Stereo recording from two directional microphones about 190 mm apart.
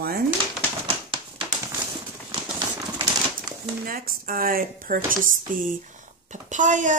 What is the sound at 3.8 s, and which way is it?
Speech, 50° right (ahead or behind).